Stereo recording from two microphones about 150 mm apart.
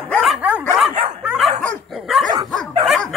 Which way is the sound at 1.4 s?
45° right (ahead or behind).